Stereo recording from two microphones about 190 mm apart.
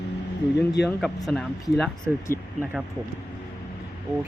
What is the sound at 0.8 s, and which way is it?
Speech, 60° left (ahead or behind).